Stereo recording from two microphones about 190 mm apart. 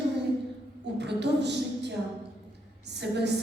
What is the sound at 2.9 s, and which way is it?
Speech, 65° right (ahead or behind).